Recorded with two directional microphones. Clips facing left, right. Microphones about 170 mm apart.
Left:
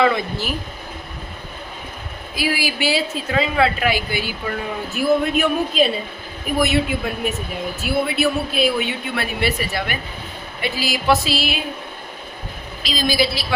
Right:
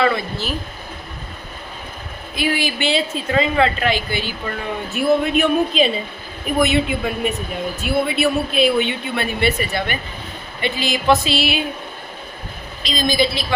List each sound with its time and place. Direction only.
0.0 s speech: 15° left (ahead or behind)
2.3 s a woman's voice: 5° left (ahead or behind)
12.8 s a woman's voice: 5° left (ahead or behind)